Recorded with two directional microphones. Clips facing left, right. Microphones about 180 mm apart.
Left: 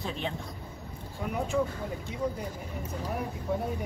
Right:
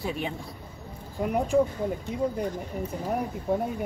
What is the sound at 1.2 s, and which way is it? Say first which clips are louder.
Speech: right 7 dB; 50° right (ahead or behind).